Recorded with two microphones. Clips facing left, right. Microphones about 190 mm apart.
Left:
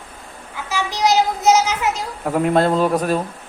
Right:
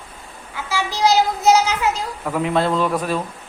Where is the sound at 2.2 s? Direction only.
45° left (ahead or behind).